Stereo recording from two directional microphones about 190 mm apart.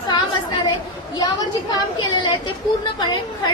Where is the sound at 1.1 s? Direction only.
20° left (ahead or behind).